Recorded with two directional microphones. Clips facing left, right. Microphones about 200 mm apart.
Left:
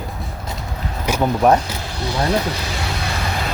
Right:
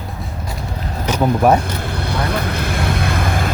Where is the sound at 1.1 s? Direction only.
10° left (ahead or behind).